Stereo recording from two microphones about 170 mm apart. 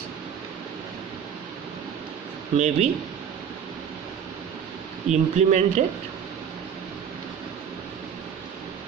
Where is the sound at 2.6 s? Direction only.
45° right (ahead or behind).